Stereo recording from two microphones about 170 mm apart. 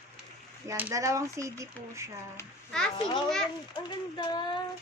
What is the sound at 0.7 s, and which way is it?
Speech, 15° right (ahead or behind).